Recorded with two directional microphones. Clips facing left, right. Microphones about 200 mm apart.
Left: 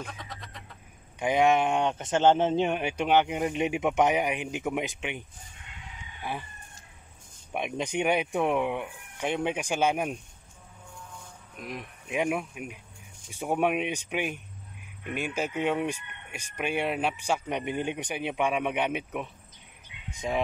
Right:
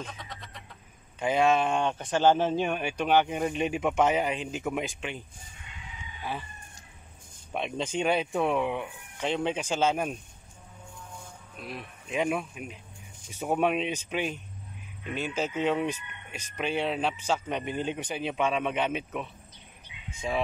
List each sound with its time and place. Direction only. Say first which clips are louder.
0.0 s frog: even; centre (ahead or behind)
1.2 s speech: left 1 dB; 15° left (ahead or behind)
7.5 s speech: left 1 dB; 15° left (ahead or behind)
11.5 s speech: left 2 dB; 15° left (ahead or behind)